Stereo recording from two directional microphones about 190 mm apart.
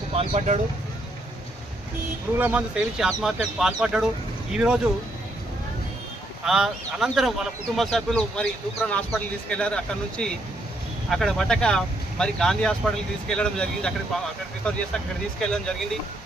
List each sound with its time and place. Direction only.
0.1 s speech: 35° right (ahead or behind)
2.4 s speech: 10° right (ahead or behind)
6.4 s speech: centre (ahead or behind)